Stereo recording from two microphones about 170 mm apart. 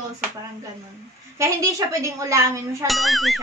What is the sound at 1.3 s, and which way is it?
A woman's voice, 20° right (ahead or behind).